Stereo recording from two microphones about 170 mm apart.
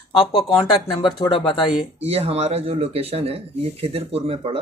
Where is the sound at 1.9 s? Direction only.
35° right (ahead or behind).